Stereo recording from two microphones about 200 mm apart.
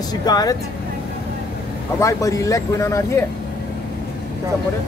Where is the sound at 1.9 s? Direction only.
15° left (ahead or behind).